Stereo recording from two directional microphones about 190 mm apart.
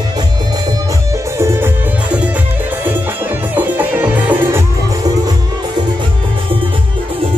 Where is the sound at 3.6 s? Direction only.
10° right (ahead or behind).